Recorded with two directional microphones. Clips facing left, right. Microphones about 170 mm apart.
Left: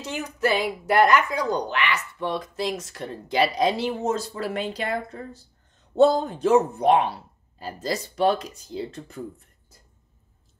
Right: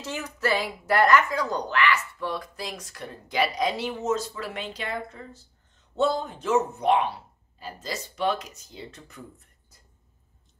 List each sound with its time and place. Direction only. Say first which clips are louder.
0.0 s speech: left 4 dB; 15° left (ahead or behind)